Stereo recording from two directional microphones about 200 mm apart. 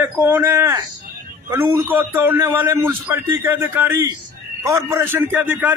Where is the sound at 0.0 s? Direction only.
10° right (ahead or behind).